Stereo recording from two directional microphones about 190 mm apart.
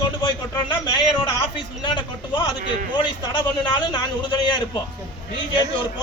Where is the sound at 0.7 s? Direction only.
25° left (ahead or behind).